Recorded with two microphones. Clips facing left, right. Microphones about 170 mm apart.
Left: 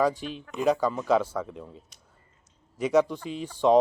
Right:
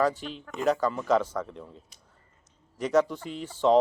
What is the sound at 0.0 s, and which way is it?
Speech, 15° left (ahead or behind).